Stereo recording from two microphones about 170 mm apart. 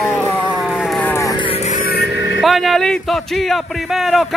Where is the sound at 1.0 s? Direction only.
15° left (ahead or behind).